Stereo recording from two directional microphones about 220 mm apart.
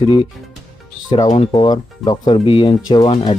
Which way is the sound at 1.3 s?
25° left (ahead or behind).